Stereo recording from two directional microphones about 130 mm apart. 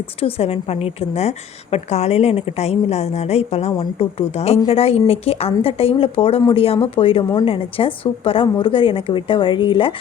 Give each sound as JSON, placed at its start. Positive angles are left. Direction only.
{"t": 0.2, "sound": "a woman's voice", "side_deg": 50}